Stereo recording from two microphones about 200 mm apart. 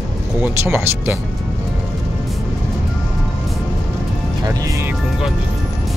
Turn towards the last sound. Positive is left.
turn(degrees=-15)  # may be behind; listen again after turning